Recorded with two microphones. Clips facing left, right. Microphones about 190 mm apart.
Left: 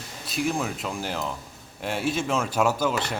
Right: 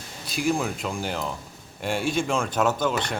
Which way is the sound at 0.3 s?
Centre (ahead or behind).